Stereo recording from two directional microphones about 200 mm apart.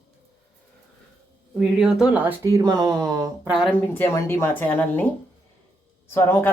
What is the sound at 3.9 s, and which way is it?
Speech, 10° left (ahead or behind).